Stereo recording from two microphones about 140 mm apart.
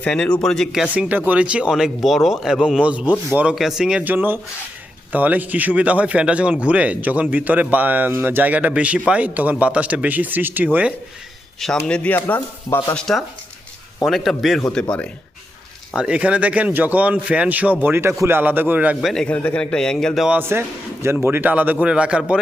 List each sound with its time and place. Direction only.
0.0 s speech: 5° left (ahead or behind); by 10.9 s 10° right (ahead or behind)
11.6 s speech: 5° left (ahead or behind)
16.0 s speech: 10° right (ahead or behind)
19.1 s speech: 10° left (ahead or behind)
20.4 s speech: 15° right (ahead or behind)